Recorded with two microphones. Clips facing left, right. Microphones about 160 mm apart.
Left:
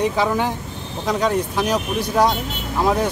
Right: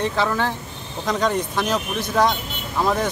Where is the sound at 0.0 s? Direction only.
10° left (ahead or behind).